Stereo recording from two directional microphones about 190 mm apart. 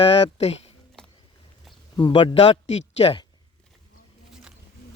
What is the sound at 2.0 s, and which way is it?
Speech, 25° left (ahead or behind).